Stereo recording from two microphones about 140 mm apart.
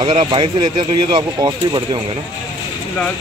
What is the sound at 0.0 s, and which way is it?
Speech, 40° right (ahead or behind).